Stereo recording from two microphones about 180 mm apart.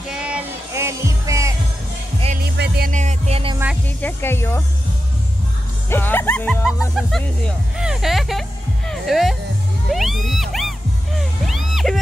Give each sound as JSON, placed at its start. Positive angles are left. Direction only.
{"t": 0.1, "sound": "music", "side_deg": -5}
{"t": 2.4, "sound": "music", "side_deg": -65}
{"t": 2.9, "sound": "music", "side_deg": -40}
{"t": 4.0, "sound": "music", "side_deg": 15}
{"t": 5.9, "sound": "music", "side_deg": 10}
{"t": 7.0, "sound": "speech", "side_deg": 0}
{"t": 9.8, "sound": "music", "side_deg": 0}